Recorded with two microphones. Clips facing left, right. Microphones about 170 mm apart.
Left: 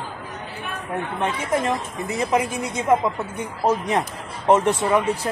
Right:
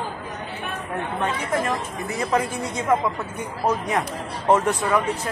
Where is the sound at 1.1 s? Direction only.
20° left (ahead or behind).